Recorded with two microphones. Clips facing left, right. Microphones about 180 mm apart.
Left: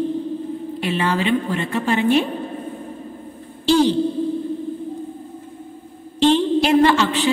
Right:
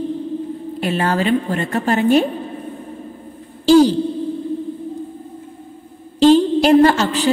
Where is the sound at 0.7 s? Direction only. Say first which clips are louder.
Right 3 dB; 45° right (ahead or behind).